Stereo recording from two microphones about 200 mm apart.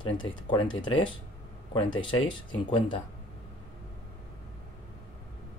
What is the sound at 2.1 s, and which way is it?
Speech, 20° left (ahead or behind).